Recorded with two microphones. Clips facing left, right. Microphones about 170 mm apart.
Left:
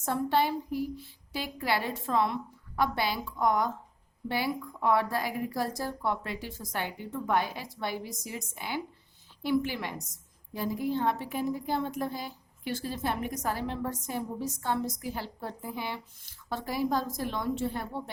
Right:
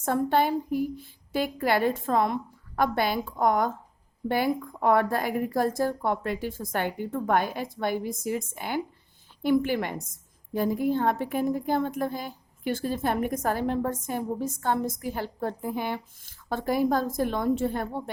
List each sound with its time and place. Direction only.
0.0 s a woman's voice: 50° right (ahead or behind)